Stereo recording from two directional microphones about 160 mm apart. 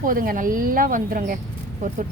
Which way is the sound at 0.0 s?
60° right (ahead or behind).